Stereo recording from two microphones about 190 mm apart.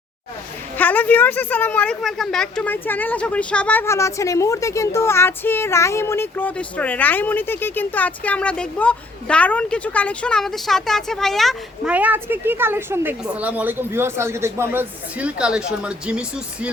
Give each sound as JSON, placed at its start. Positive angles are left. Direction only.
{"t": 0.8, "sound": "a woman's voice", "side_deg": 10}